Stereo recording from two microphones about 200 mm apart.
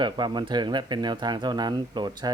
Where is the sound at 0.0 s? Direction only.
20° right (ahead or behind).